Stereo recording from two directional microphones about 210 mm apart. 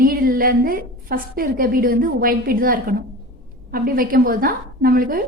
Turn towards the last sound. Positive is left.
turn(degrees=-45)  # may be behind; listen again after turning